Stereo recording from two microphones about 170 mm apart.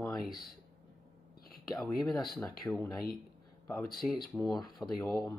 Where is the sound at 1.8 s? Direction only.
Centre (ahead or behind).